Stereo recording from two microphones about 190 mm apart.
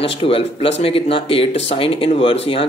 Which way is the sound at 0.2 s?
30° left (ahead or behind).